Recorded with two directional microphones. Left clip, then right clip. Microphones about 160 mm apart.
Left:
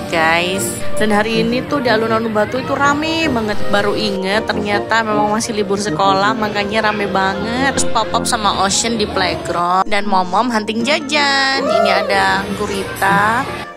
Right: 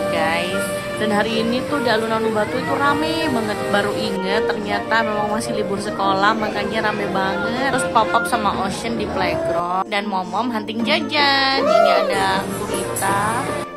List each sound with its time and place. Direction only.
0.1 s speech: 35° left (ahead or behind)
1.0 s a woman's voice: 25° left (ahead or behind)
8.0 s speech: 35° left (ahead or behind)
10.1 s a woman's voice: 45° left (ahead or behind)
11.6 s speech: centre (ahead or behind)
11.9 s speech: 40° left (ahead or behind)